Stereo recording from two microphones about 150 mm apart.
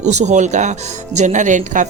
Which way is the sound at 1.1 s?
55° right (ahead or behind).